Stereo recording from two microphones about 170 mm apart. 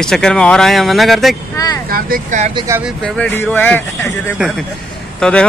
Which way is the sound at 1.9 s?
60° right (ahead or behind).